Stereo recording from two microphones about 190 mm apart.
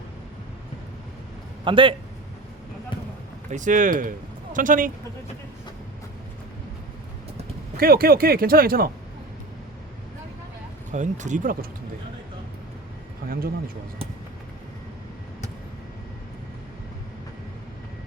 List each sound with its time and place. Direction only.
1.6 s a man's voice: 25° right (ahead or behind)
3.5 s speech: 40° right (ahead or behind)
7.8 s speech: 50° right (ahead or behind)
10.9 s speech: 40° right (ahead or behind)
13.2 s speech: 50° right (ahead or behind)